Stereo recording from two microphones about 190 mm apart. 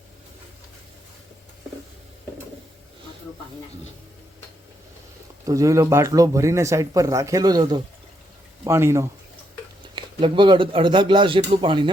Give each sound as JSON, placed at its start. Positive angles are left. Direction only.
{"t": 5.5, "sound": "speech", "side_deg": -15}
{"t": 9.9, "sound": "speech", "side_deg": -25}